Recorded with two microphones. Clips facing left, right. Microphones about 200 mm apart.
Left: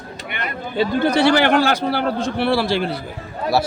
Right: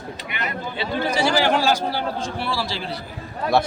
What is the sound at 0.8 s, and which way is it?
A man's voice, 60° left (ahead or behind).